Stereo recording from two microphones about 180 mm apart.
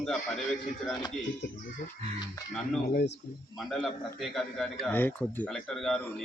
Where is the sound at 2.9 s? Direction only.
65° left (ahead or behind).